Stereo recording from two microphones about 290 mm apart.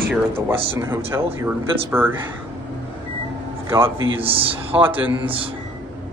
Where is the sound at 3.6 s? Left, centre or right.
Centre.